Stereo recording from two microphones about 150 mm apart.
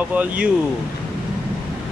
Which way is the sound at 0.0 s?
10° right (ahead or behind).